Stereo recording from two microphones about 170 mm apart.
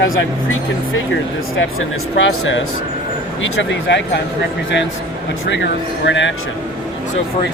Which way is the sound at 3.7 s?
90° left.